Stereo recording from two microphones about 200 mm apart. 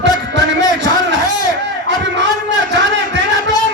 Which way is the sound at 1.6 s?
65° right (ahead or behind).